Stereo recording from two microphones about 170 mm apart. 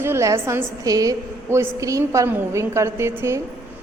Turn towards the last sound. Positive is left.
turn(degrees=-15)  # may be behind; listen again after turning